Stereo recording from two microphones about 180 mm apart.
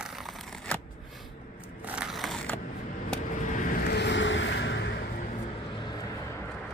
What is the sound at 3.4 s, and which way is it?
Vehicle, 45° left (ahead or behind).